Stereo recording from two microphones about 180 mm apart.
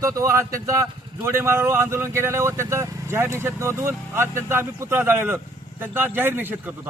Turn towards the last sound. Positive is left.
turn(degrees=-10)  # may be behind; listen again after turning